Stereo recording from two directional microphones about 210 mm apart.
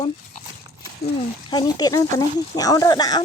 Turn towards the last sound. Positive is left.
turn(degrees=20)  # may be behind; listen again after turning